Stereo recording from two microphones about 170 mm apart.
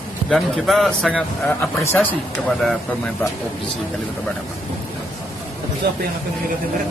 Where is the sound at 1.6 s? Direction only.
15° left (ahead or behind).